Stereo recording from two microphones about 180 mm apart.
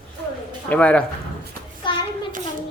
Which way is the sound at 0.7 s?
10° left (ahead or behind).